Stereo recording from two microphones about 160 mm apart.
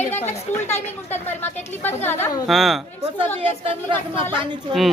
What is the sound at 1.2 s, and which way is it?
A woman's voice, 15° left (ahead or behind).